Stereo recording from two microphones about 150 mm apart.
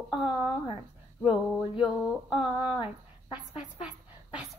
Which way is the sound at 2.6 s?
15° right (ahead or behind).